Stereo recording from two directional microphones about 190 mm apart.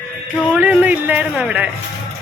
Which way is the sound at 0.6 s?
10° right (ahead or behind).